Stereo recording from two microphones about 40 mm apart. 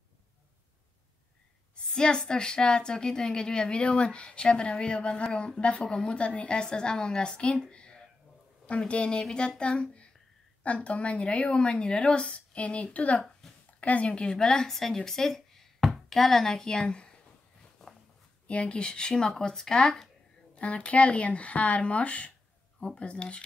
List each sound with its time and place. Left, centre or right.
1.8 s a woman's voice: left
13.4 s a sound: centre
13.7 s a woman's voice: left; by 15.0 s centre
15.0 s a sound: centre
15.8 s speech: centre; by 17.1 s left
18.5 s a woman's voice: left
20.5 s a woman's voice: left